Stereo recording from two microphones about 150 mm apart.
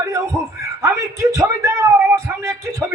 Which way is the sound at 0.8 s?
20° right (ahead or behind).